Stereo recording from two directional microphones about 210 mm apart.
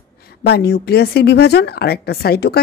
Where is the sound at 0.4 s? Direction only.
50° left (ahead or behind).